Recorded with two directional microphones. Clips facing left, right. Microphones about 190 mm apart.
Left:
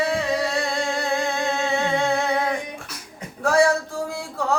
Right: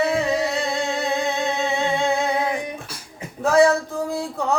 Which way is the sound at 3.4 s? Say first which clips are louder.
Right 3 dB; 20° right (ahead or behind).